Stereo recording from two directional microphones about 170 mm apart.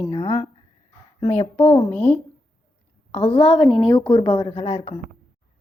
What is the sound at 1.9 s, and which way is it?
Speech, 10° left (ahead or behind).